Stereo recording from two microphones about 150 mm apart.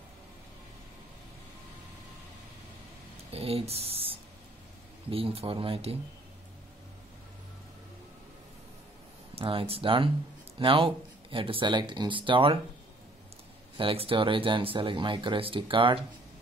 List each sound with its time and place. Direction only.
3.3 s speech: 40° right (ahead or behind)
9.3 s speech: 35° right (ahead or behind)
13.7 s speech: 35° right (ahead or behind)